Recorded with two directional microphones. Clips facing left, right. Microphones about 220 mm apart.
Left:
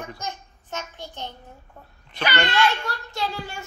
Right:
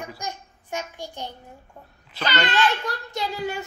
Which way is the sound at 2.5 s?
20° right (ahead or behind).